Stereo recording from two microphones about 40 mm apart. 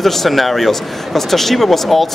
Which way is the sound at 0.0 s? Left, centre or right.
Centre.